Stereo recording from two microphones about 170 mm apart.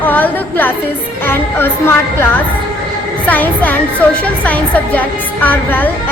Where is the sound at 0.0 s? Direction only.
10° left (ahead or behind).